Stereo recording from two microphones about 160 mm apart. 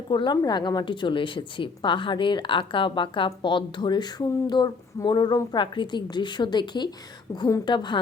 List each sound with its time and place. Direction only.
0.1 s speech: 30° left (ahead or behind)